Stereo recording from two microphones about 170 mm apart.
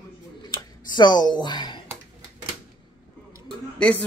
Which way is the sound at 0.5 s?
25° left (ahead or behind).